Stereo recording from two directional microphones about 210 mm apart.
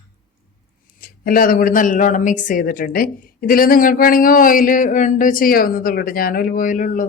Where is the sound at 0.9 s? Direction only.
45° left (ahead or behind).